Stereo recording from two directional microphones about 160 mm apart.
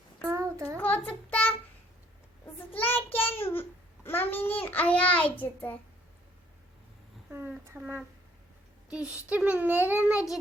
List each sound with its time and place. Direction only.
0.3 s child singing: 15° right (ahead or behind)
0.8 s child singing: 10° left (ahead or behind)
2.7 s child singing: 10° left (ahead or behind)
7.3 s a child's voice: 10° right (ahead or behind)